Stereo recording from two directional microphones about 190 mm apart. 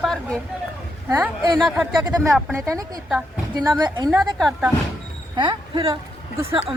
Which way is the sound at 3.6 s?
25° right (ahead or behind).